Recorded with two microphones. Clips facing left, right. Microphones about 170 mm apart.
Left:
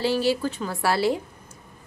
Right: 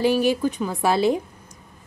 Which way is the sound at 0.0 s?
15° right (ahead or behind).